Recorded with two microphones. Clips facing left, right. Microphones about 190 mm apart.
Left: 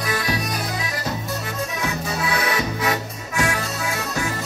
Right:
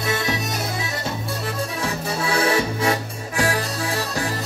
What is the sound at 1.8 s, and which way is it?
Music, 30° right (ahead or behind).